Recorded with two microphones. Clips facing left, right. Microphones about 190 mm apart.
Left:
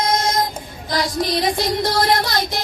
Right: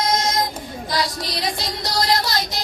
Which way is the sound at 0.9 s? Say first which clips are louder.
Left 5 dB; 50° left (ahead or behind).